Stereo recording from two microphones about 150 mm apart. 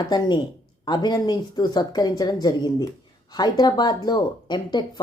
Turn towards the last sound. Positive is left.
turn(degrees=30)  # may be behind; listen again after turning